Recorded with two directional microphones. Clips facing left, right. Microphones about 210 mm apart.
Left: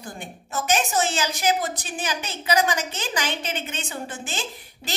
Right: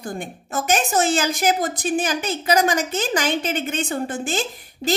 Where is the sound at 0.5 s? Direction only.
50° right (ahead or behind).